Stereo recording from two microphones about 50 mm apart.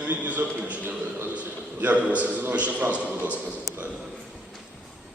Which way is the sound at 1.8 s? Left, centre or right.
Right.